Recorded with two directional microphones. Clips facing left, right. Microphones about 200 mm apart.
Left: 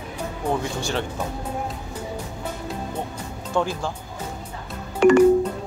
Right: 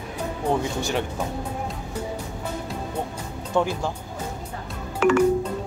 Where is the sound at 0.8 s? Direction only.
20° right (ahead or behind).